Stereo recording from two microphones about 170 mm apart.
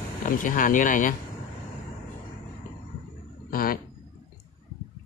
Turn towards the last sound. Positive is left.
turn(degrees=60)  # may be behind; listen again after turning